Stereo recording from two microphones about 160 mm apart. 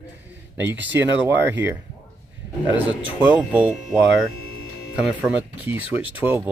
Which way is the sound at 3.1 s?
10° right (ahead or behind).